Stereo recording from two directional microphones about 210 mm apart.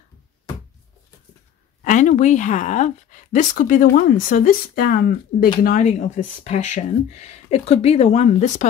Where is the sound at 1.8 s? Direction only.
35° left (ahead or behind).